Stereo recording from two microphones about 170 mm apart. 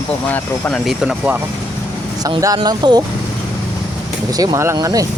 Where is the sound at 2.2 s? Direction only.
20° right (ahead or behind).